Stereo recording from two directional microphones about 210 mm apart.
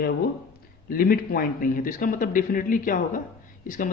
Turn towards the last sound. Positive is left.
turn(degrees=40)  # may be behind; listen again after turning